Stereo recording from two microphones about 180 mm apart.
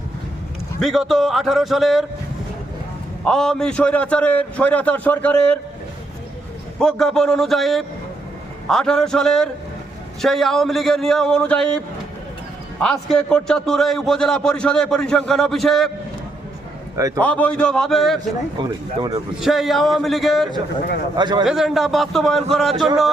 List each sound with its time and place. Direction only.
0.8 s a man's voice: centre (ahead or behind)
3.2 s a man's voice: 5° left (ahead or behind)
6.7 s a man's voice: 5° left (ahead or behind)
12.8 s a man's voice: 5° left (ahead or behind)
17.0 s speech: 20° right (ahead or behind)
17.2 s a man's voice: 10° left (ahead or behind)
18.6 s speech: 25° right (ahead or behind)
19.4 s a man's voice: centre (ahead or behind)
21.2 s speech: 25° right (ahead or behind)
21.4 s a man's voice: centre (ahead or behind)